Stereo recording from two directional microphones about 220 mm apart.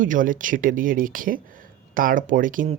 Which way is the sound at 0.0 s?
35° right (ahead or behind).